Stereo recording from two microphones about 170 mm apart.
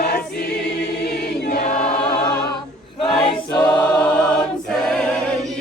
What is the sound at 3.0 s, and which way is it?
Choir, 25° left (ahead or behind).